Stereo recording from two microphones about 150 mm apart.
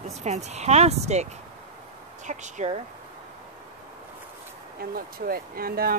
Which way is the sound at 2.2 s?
55° right (ahead or behind).